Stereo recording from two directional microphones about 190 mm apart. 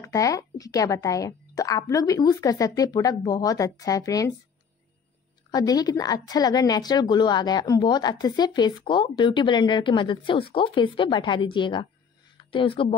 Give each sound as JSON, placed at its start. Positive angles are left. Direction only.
{"t": 0.0, "sound": "a woman's voice", "side_deg": 15}
{"t": 5.5, "sound": "a woman's voice", "side_deg": 20}